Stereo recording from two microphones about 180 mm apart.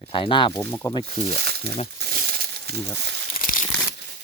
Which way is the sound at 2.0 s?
55° right (ahead or behind).